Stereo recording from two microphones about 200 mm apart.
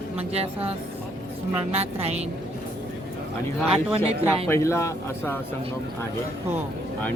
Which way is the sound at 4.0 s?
30° right (ahead or behind).